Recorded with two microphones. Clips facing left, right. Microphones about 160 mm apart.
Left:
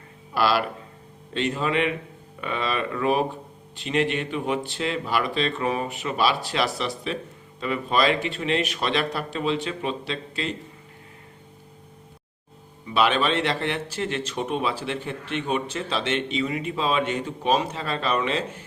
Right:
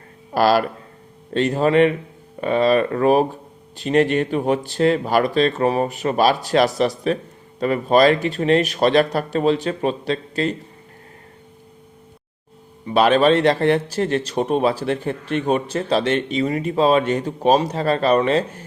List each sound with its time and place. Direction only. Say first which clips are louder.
0.3 s speech: right 6 dB; 45° right (ahead or behind)
12.8 s speech: right 7 dB; 45° right (ahead or behind)